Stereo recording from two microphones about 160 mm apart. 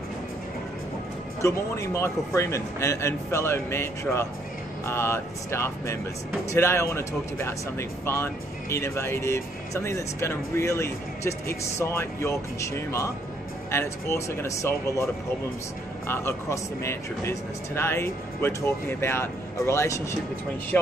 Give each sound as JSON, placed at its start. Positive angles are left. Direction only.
{"t": 1.4, "sound": "speech", "side_deg": 15}
{"t": 16.1, "sound": "speech", "side_deg": 15}